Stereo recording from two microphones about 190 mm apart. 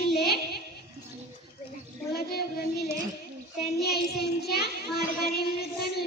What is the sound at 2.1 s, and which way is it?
Child singing, 55° left (ahead or behind).